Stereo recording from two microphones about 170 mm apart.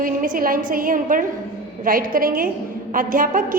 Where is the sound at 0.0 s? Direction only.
55° right (ahead or behind).